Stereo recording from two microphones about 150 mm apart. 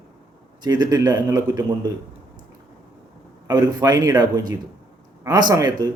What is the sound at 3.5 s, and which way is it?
Speech, 30° right (ahead or behind).